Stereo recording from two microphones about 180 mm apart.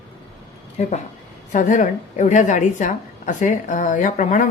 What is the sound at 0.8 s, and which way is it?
A woman's voice, 40° left (ahead or behind).